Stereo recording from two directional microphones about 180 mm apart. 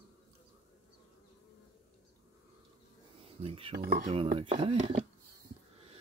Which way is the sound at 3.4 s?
30° right (ahead or behind).